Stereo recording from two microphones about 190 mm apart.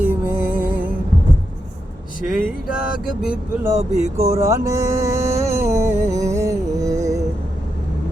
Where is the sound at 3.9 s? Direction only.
35° right (ahead or behind).